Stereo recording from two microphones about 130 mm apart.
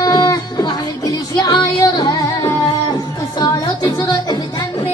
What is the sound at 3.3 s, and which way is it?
Music, 35° left (ahead or behind).